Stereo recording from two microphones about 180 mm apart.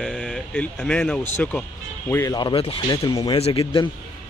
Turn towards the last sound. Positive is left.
turn(degrees=35)  # may be behind; listen again after turning